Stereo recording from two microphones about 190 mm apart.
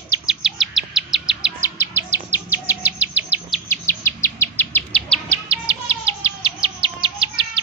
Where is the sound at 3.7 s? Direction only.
10° left (ahead or behind).